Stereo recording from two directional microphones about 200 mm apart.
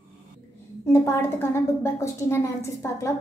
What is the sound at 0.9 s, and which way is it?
A woman's voice, 10° left (ahead or behind).